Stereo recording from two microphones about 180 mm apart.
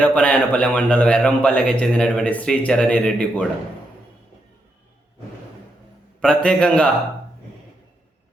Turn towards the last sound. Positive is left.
turn(degrees=5)  # may be behind; listen again after turning